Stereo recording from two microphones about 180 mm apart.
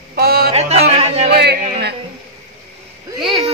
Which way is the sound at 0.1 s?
60° right (ahead or behind).